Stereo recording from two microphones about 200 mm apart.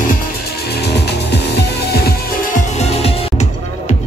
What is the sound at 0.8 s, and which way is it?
Music, 55° left (ahead or behind).